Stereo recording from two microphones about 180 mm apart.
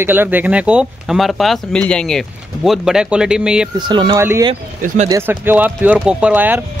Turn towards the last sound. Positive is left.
turn(degrees=-10)  # may be behind; listen again after turning